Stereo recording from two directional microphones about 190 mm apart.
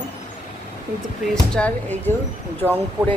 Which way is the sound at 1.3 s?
5° left (ahead or behind).